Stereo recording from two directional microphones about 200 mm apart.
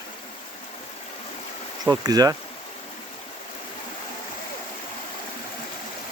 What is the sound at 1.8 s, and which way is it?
Speech, 20° right (ahead or behind).